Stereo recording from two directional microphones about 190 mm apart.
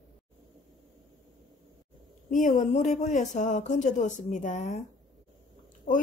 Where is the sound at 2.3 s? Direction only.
40° left (ahead or behind).